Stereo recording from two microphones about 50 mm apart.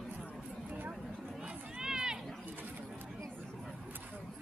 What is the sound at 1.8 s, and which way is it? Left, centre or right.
Run, centre.